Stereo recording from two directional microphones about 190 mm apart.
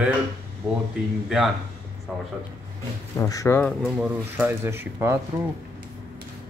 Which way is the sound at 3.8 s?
5° right (ahead or behind).